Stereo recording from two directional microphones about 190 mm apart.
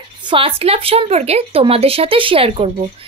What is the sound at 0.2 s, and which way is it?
A woman's voice, 25° right (ahead or behind).